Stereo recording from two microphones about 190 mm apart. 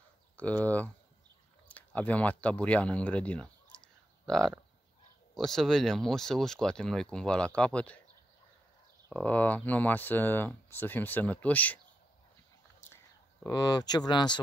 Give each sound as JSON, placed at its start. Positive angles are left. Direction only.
{"t": 0.4, "sound": "speech", "side_deg": 10}
{"t": 9.1, "sound": "speech", "side_deg": 5}
{"t": 12.9, "sound": "speech", "side_deg": 15}